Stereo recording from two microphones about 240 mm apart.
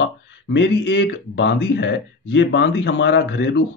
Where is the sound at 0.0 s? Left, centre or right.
Left.